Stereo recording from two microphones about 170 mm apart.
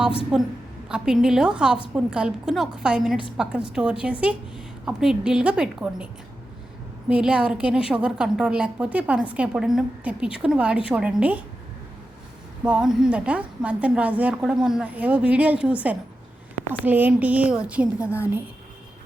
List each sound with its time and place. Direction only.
0.3 s a woman's voice: 5° right (ahead or behind)
7.1 s a woman's voice: 5° right (ahead or behind)
12.6 s a woman's voice: 5° right (ahead or behind)